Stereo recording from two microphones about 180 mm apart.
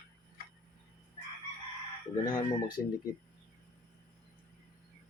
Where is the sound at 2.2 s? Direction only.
25° left (ahead or behind).